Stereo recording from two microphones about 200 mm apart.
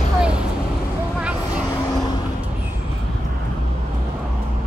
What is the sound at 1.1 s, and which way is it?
Vehicle, 5° right (ahead or behind).